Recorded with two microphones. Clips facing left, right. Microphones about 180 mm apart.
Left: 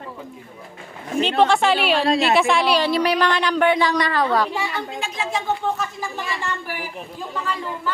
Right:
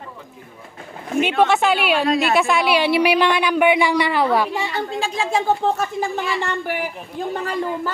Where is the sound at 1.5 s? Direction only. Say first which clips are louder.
Even; 5° right (ahead or behind).